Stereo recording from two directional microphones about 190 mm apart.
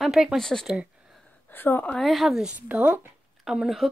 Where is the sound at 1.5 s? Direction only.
10° left (ahead or behind).